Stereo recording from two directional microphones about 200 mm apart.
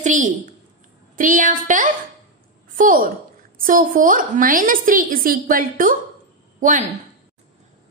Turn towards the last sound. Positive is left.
turn(degrees=-40)  # may be behind; listen again after turning